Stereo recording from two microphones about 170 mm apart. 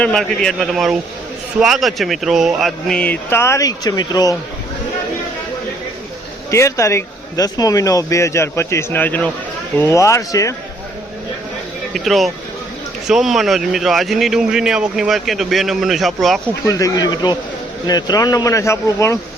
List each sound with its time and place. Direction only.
0.0 s speech: 5° left (ahead or behind); by 4.4 s 20° left (ahead or behind)
6.5 s a man's voice: 15° left (ahead or behind)
11.9 s speech: centre (ahead or behind)
16.6 s speech: 20° left (ahead or behind)